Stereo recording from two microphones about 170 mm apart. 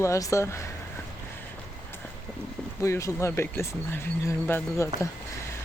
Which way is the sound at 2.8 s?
15° left (ahead or behind).